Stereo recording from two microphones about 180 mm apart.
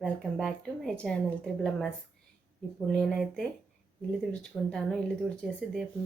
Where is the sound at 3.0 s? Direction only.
Centre (ahead or behind).